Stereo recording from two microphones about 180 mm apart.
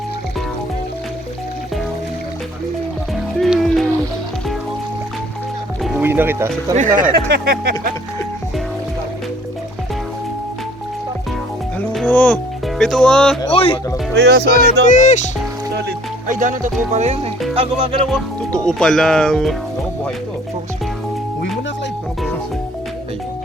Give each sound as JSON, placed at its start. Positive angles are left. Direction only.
{"t": 3.3, "sound": "music", "side_deg": 0}
{"t": 6.0, "sound": "speech", "side_deg": -10}
{"t": 6.7, "sound": "speech", "side_deg": -45}
{"t": 7.3, "sound": "speech", "side_deg": -65}
{"t": 11.8, "sound": "music", "side_deg": 10}
{"t": 13.5, "sound": "speech", "side_deg": 30}
{"t": 14.2, "sound": "speech", "side_deg": -70}
{"t": 14.8, "sound": "speech", "side_deg": 40}
{"t": 15.7, "sound": "music", "side_deg": -55}
{"t": 17.5, "sound": "speech", "side_deg": -30}
{"t": 18.1, "sound": "speech", "side_deg": 5}